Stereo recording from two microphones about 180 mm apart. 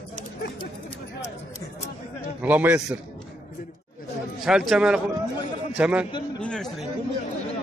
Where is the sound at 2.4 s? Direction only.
10° right (ahead or behind).